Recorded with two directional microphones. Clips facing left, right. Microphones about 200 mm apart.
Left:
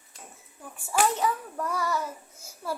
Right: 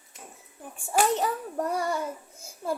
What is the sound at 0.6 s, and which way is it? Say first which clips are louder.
A child's voice: right 1 dB; 30° right (ahead or behind).